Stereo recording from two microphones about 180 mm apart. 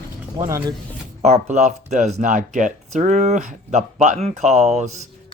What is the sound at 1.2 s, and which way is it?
Speech, 40° right (ahead or behind).